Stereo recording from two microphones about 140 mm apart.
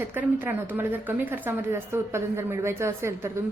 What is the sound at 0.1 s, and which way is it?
A woman's voice, 15° right (ahead or behind).